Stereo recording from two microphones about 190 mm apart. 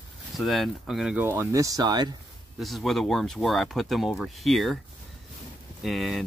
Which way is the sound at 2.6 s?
Centre (ahead or behind).